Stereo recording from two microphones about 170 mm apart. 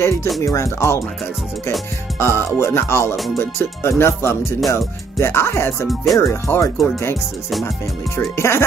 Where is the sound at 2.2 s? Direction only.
15° left (ahead or behind).